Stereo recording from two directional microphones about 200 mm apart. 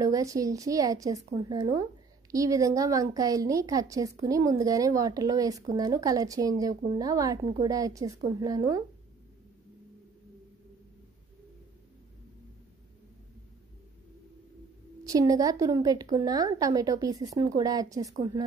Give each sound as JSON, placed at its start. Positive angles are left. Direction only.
{"t": 0.0, "sound": "a woman's voice", "side_deg": -15}
{"t": 15.0, "sound": "a woman's voice", "side_deg": -15}